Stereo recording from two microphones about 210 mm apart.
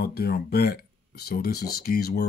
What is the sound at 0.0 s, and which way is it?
Speech, 50° left (ahead or behind).